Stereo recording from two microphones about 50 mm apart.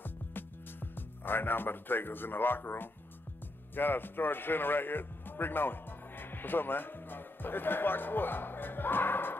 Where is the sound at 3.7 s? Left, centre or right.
Left.